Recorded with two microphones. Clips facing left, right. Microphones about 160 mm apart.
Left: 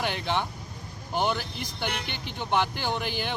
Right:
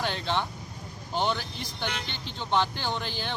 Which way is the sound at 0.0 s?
15° left (ahead or behind).